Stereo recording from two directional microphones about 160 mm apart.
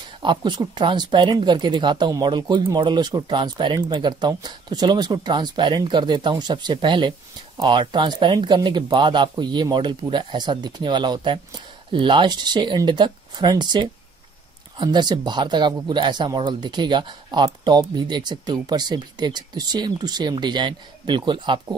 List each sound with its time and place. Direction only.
0.2 s speech: 30° right (ahead or behind)